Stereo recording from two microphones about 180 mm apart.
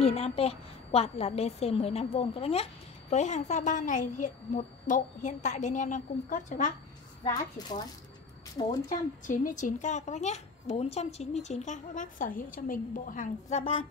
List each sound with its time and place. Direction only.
0.0 s a woman's voice: 35° left (ahead or behind)
7.3 s speech: 20° left (ahead or behind)
8.8 s a child's voice: 45° left (ahead or behind)